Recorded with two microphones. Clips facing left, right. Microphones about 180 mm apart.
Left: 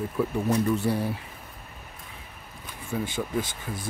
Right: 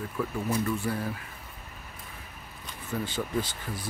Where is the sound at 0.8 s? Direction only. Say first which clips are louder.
Left 5 dB; 30° left (ahead or behind).